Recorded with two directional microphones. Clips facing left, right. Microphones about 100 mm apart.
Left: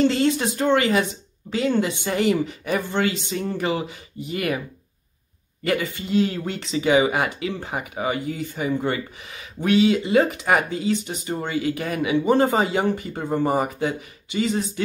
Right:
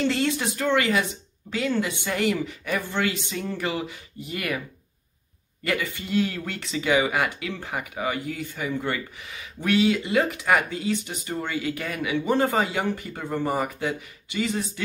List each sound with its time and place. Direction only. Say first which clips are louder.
0.0 s speech: left 5 dB; 30° left (ahead or behind)
5.7 s speech: left 4 dB; 30° left (ahead or behind)